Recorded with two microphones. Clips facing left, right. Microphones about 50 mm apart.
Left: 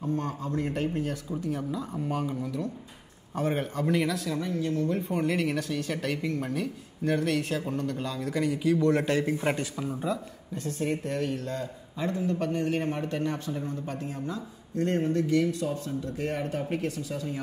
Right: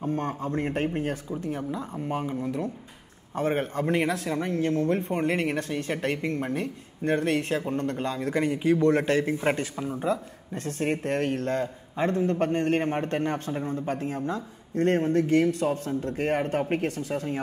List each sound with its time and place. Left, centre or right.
0.0 s speech: right
10.0 s speech: right